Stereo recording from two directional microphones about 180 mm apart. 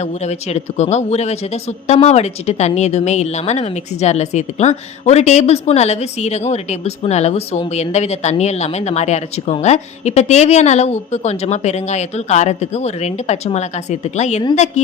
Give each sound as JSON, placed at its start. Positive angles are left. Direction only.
{"t": 0.0, "sound": "speech", "side_deg": 40}